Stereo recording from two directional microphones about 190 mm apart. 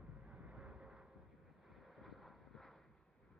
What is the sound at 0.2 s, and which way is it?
Vehicle, 5° right (ahead or behind).